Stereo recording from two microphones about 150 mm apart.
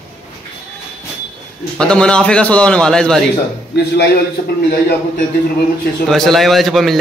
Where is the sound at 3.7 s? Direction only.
90° left.